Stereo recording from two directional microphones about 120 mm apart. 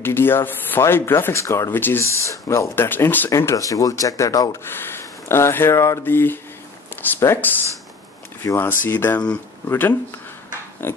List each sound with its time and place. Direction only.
0.0 s speech: 20° left (ahead or behind)